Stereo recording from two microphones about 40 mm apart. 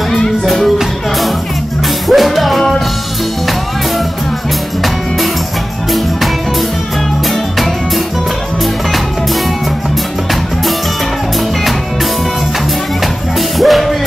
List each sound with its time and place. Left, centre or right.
2.0 s music: centre
13.6 s music: centre